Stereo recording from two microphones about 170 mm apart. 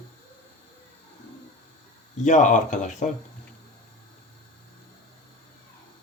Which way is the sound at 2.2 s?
45° left (ahead or behind).